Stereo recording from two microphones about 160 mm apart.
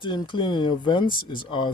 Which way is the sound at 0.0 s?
30° left (ahead or behind).